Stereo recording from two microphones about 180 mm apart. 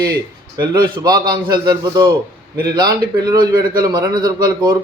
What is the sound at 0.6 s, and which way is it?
A man's voice, 25° right (ahead or behind).